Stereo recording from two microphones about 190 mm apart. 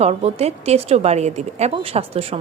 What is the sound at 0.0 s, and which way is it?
A woman's voice, 35° right (ahead or behind).